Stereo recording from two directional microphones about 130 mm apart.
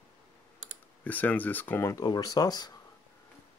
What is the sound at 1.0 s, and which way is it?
Speech, 10° left (ahead or behind).